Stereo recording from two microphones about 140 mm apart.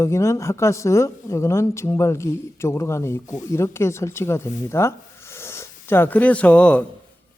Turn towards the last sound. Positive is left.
turn(degrees=10)  # may be behind; listen again after turning